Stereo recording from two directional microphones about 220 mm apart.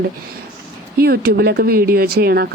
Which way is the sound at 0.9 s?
45° right (ahead or behind).